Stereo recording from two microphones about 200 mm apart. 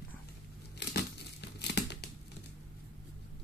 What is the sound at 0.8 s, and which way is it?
Crumpling, 55° left (ahead or behind).